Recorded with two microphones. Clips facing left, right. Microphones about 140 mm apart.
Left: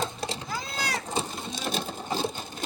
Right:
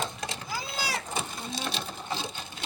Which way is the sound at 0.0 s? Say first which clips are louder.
Left 3 dB; 30° left (ahead or behind).